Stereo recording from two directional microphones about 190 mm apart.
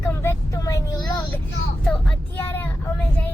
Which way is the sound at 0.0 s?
15° left (ahead or behind).